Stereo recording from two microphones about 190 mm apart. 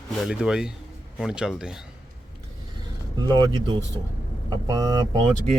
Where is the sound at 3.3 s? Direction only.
20° right (ahead or behind).